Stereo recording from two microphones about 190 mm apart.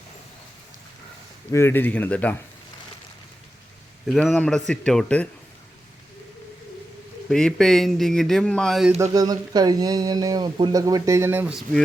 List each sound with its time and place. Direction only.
1.5 s speech: 10° left (ahead or behind)
4.0 s speech: centre (ahead or behind)
7.3 s speech: 5° left (ahead or behind)
9.1 s speech: 20° right (ahead or behind); by 11.8 s 5° right (ahead or behind)